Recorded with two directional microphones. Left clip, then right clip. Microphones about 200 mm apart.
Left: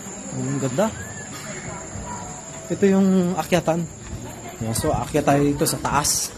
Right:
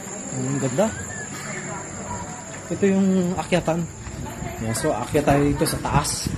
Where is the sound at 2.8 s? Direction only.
30° left (ahead or behind).